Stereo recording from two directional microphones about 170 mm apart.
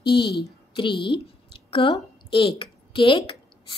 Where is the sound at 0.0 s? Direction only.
25° left (ahead or behind).